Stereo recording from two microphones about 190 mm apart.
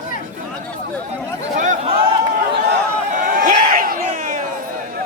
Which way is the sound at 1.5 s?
40° right (ahead or behind).